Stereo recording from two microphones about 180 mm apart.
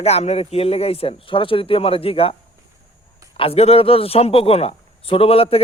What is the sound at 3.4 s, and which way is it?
Speech, 35° left (ahead or behind).